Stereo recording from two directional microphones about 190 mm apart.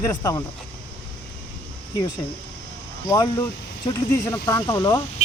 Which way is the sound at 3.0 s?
20° left (ahead or behind).